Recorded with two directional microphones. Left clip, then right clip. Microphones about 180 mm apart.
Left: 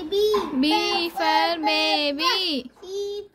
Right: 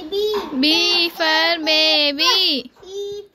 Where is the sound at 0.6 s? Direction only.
Centre (ahead or behind).